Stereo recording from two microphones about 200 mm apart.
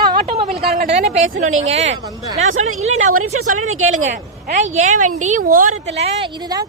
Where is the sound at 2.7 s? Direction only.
35° right (ahead or behind).